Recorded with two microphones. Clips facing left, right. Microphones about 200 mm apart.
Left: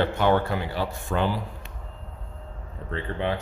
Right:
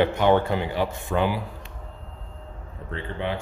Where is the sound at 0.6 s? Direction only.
20° right (ahead or behind).